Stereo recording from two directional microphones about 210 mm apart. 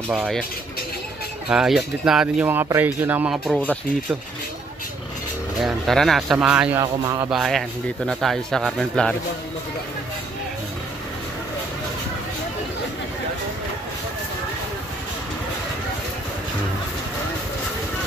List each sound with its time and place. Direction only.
0.1 s speech: centre (ahead or behind)
1.5 s speech: centre (ahead or behind)
5.6 s speech: centre (ahead or behind)
6.8 s speech: 15° right (ahead or behind)
7.2 s speech: centre (ahead or behind)